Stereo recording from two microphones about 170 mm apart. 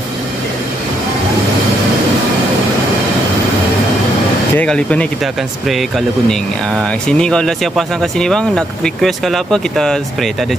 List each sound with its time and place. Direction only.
4.6 s speech: 5° left (ahead or behind)